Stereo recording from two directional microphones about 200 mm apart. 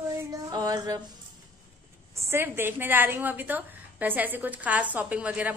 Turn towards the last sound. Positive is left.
turn(degrees=-5)  # may be behind; listen again after turning